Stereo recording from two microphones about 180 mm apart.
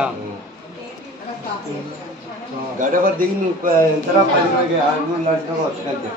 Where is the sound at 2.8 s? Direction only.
50° right (ahead or behind).